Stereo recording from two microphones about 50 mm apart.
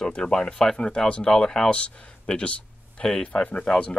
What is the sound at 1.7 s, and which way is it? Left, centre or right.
Speech, left.